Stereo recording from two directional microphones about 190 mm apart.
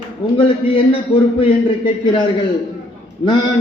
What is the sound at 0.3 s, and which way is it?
Speech, 30° left (ahead or behind).